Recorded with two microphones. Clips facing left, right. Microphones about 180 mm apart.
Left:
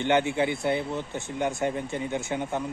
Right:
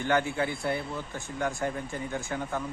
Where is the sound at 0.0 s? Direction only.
25° left (ahead or behind).